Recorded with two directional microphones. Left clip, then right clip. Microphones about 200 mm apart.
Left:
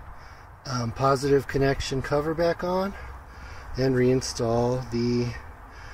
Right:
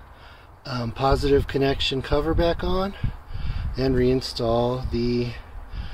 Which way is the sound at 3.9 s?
15° right (ahead or behind).